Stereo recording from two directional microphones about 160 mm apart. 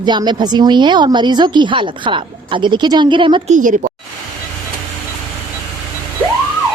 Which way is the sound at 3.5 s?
50° right (ahead or behind).